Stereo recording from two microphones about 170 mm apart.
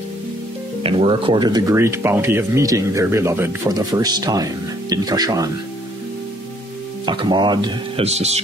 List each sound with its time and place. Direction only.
0.8 s speech: 30° right (ahead or behind)
7.1 s speech: 25° right (ahead or behind)